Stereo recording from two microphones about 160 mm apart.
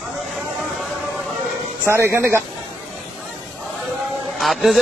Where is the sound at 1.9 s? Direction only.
15° right (ahead or behind).